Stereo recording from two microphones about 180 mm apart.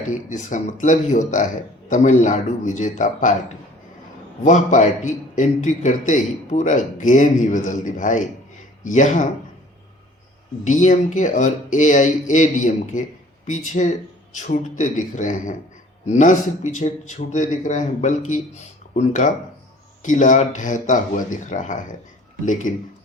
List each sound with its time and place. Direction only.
0.1 s a man's voice: 45° left (ahead or behind)
4.4 s a man's voice: 45° left (ahead or behind)
10.6 s a man's voice: 40° left (ahead or behind)